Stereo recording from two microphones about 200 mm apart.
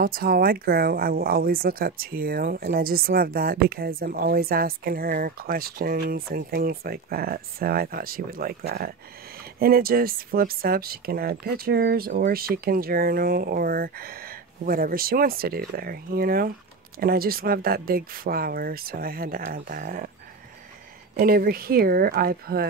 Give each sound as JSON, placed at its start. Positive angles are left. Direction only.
{"t": 0.0, "sound": "speech", "side_deg": -50}
{"t": 21.2, "sound": "speech", "side_deg": -45}